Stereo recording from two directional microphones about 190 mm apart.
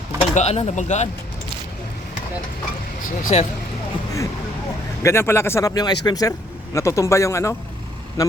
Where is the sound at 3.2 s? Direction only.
35° left (ahead or behind).